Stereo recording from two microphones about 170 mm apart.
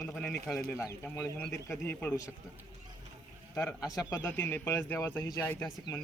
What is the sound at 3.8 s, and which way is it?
Speech, 20° left (ahead or behind).